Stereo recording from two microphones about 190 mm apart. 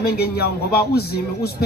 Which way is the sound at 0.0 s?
55° left (ahead or behind).